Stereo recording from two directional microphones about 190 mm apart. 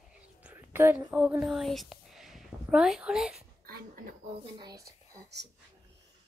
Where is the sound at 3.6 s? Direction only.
50° right (ahead or behind).